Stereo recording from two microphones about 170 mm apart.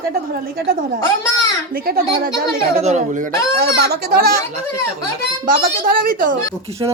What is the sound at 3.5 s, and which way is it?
Speech, 70° right (ahead or behind).